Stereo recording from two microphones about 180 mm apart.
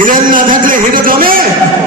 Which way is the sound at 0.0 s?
50° right (ahead or behind).